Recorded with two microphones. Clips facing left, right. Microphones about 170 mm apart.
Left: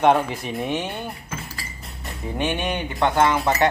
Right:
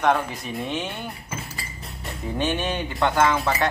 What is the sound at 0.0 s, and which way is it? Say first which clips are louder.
Speech: left 4 dB; 25° left (ahead or behind).